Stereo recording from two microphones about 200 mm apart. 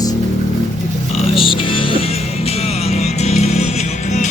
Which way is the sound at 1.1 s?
25° left (ahead or behind).